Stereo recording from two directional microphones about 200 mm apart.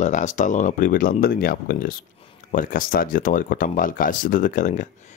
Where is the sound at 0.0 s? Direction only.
35° left (ahead or behind).